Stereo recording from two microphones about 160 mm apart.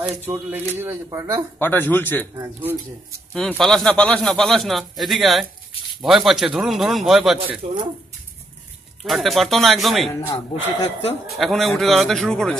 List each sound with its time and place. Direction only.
0.3 s speech: 15° right (ahead or behind)
1.6 s speech: 10° left (ahead or behind)
2.3 s speech: 20° right (ahead or behind)
3.3 s a man's voice: centre (ahead or behind)
7.6 s speech: 40° right (ahead or behind)
9.0 s a man's voice: centre (ahead or behind)
10.2 s speech: 35° left (ahead or behind)
11.2 s a man's voice: centre (ahead or behind)